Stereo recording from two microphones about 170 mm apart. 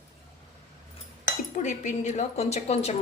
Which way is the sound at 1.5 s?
45° left (ahead or behind).